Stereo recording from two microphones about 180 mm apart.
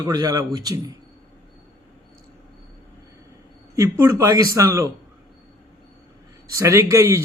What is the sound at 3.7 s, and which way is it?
A man's voice, 15° right (ahead or behind).